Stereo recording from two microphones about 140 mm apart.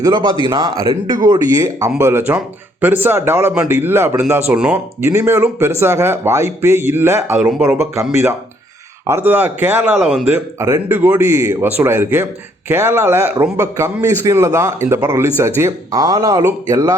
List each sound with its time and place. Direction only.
0.0 s a man's voice: 30° right (ahead or behind)
9.0 s speech: 15° right (ahead or behind)
9.9 s speech: centre (ahead or behind)
10.2 s a man's voice: 20° right (ahead or behind)